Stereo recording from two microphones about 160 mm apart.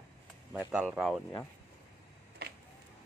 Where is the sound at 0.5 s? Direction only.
10° right (ahead or behind).